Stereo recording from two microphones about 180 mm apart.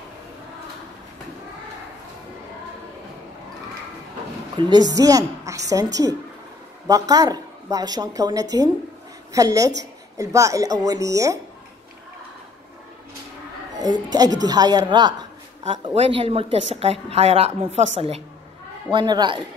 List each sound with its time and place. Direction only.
4.6 s a woman's voice: 25° right (ahead or behind)
13.7 s music: 25° right (ahead or behind)
14.1 s a woman's voice: 20° right (ahead or behind)
18.9 s a woman's voice: 25° right (ahead or behind)